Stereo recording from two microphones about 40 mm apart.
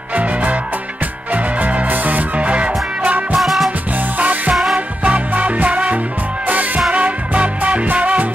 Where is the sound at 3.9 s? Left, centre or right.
Right.